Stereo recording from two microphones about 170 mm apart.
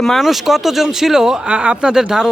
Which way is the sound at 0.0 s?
Centre (ahead or behind).